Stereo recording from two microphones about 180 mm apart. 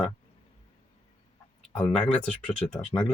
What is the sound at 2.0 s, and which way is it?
Speech, 5° left (ahead or behind).